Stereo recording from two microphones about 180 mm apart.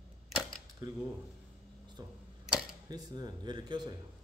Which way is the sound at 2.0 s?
20° right (ahead or behind).